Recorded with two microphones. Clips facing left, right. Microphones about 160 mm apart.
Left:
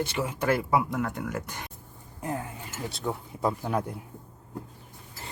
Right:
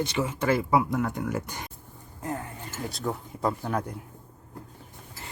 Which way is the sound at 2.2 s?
15° left (ahead or behind).